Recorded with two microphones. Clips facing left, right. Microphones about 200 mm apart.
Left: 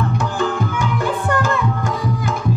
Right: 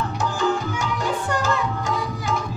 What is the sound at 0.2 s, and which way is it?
Music, 55° left (ahead or behind).